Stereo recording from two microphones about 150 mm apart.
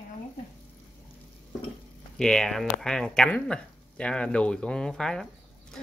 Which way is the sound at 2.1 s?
5° left (ahead or behind).